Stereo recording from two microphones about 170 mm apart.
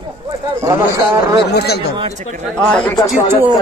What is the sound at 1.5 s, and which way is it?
Speech, 70° left (ahead or behind).